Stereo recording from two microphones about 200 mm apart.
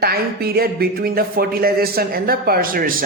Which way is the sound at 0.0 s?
50° right (ahead or behind).